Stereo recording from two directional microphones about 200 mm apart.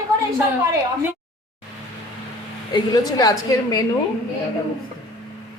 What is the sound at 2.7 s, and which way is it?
A woman's voice, 20° left (ahead or behind).